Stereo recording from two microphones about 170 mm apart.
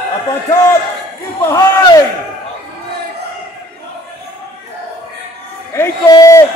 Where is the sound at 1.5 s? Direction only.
20° left (ahead or behind).